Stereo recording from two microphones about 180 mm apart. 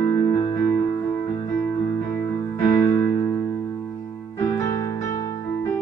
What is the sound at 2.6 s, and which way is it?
Music, 25° left (ahead or behind).